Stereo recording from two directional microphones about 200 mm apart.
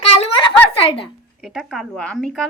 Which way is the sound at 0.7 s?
30° left (ahead or behind).